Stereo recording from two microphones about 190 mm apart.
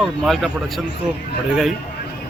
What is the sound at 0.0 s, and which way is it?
Speech, centre (ahead or behind).